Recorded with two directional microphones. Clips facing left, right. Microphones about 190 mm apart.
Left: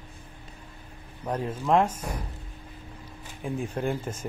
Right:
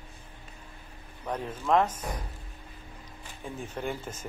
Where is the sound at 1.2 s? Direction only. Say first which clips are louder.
Left 3 dB; 10° left (ahead or behind).